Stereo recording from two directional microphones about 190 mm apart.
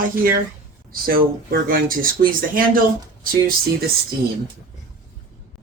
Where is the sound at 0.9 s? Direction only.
50° right (ahead or behind).